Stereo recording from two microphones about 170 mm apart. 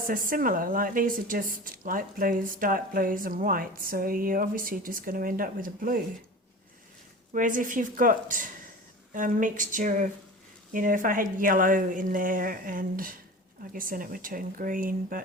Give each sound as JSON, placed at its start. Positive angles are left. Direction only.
{"t": 0.1, "sound": "speech", "side_deg": -55}
{"t": 7.3, "sound": "a woman's voice", "side_deg": -50}